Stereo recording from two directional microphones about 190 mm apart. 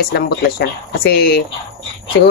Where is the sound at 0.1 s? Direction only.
55° left (ahead or behind).